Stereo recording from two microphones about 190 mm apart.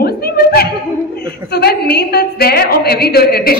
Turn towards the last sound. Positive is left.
turn(degrees=55)  # may be behind; listen again after turning